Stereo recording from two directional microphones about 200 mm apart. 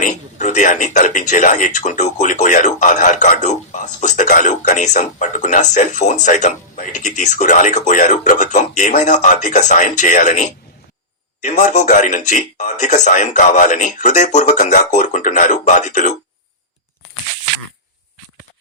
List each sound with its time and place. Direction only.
0.0 s a man's voice: 35° left (ahead or behind)